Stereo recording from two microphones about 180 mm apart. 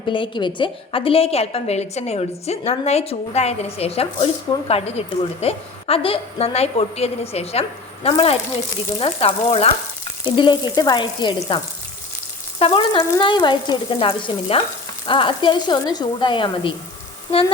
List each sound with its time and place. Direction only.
0.1 s a woman's voice: 25° left (ahead or behind)
10.2 s frying: 25° left (ahead or behind)